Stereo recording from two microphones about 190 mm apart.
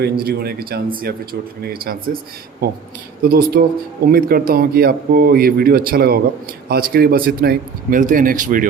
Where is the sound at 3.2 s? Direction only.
50° right (ahead or behind).